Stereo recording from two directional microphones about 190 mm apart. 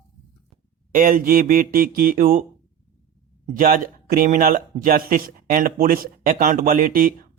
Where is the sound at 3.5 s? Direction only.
45° right (ahead or behind).